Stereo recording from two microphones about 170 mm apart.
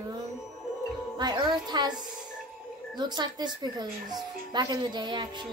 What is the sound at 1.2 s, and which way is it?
Speech, 25° right (ahead or behind).